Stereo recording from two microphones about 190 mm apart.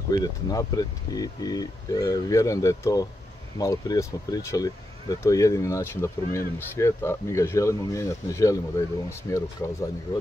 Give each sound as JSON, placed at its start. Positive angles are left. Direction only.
{"t": 0.1, "sound": "speech", "side_deg": 20}